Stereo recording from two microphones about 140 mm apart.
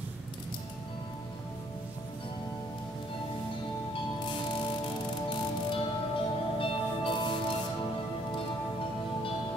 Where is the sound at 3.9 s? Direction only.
35° left (ahead or behind).